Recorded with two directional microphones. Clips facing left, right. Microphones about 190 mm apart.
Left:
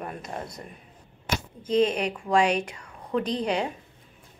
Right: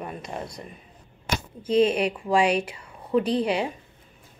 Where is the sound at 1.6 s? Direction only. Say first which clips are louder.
Right 2 dB; 10° right (ahead or behind).